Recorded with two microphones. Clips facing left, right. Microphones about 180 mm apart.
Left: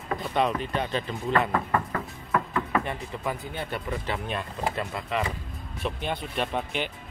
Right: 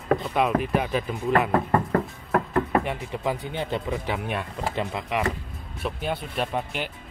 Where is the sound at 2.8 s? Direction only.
20° right (ahead or behind).